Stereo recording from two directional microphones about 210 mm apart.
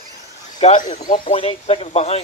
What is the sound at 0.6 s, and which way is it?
Speech, 35° left (ahead or behind).